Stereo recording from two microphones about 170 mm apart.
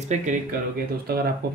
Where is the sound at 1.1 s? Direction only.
65° right (ahead or behind).